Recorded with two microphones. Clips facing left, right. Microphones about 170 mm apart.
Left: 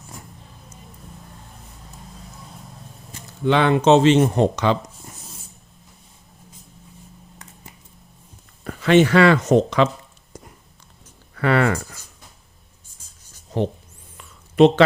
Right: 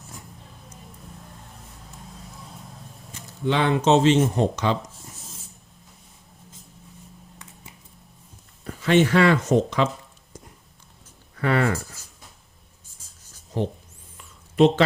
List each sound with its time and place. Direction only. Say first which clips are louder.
2.1 s vehicle: left 1 dB; centre (ahead or behind)
3.4 s speech: left 4 dB; 65° left (ahead or behind)
8.6 s speech: left 4 dB; 75° left (ahead or behind)
10.3 s a sound: left 3 dB; 70° left (ahead or behind)
11.3 s speech: left 3 dB; 80° left
14.2 s a sound: left 4 dB; 70° left (ahead or behind)